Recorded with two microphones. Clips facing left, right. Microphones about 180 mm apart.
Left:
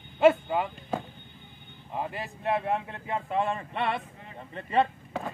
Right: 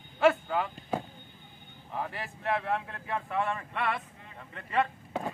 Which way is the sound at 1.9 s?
20° left (ahead or behind).